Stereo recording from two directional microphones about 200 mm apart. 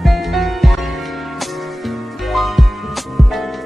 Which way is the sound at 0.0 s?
Centre (ahead or behind).